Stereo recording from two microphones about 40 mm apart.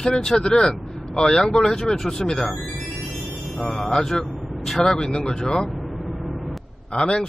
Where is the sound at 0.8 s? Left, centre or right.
Centre.